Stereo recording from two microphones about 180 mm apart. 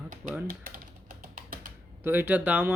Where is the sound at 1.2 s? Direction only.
50° right (ahead or behind).